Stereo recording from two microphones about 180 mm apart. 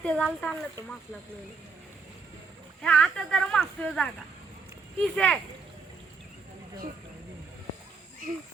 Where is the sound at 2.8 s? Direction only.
5° left (ahead or behind).